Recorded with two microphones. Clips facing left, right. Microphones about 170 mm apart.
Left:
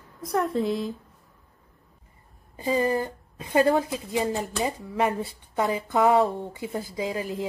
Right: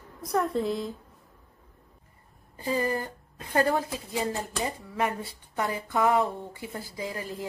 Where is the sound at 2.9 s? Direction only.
20° left (ahead or behind).